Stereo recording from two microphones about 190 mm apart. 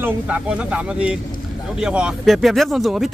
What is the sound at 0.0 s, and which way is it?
Speech, 5° right (ahead or behind).